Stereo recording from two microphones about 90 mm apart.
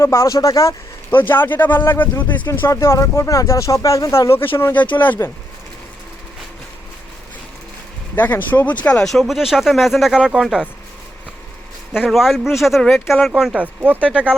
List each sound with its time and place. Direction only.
0.0 s speech: 30° left (ahead or behind)
1.1 s speech: 25° left (ahead or behind)
2.5 s speech: 30° left (ahead or behind)
8.1 s speech: 20° left (ahead or behind); by 10.7 s 10° right (ahead or behind)
11.9 s speech: 5° right (ahead or behind)